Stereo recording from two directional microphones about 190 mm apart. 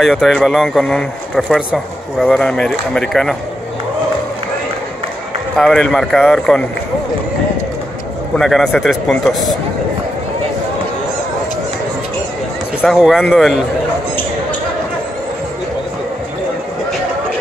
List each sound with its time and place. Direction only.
0.0 s speech: centre (ahead or behind)
5.6 s speech: 5° left (ahead or behind)
8.4 s speech: centre (ahead or behind)
12.8 s speech: centre (ahead or behind)